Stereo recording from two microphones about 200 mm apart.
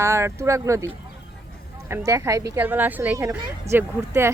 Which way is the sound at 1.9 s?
15° right (ahead or behind).